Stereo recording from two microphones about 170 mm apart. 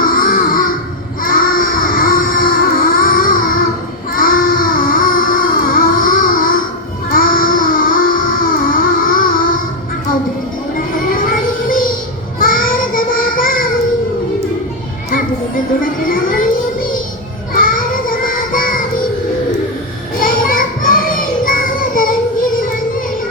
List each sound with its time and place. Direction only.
0.0 s music: 55° left (ahead or behind)
1.2 s a sound: 55° left (ahead or behind)
11.0 s a sound: 55° left (ahead or behind)
12.4 s child singing: 55° left (ahead or behind)
15.1 s children playing: 55° left (ahead or behind)
17.5 s child singing: 55° left (ahead or behind)
20.1 s music: 55° left (ahead or behind)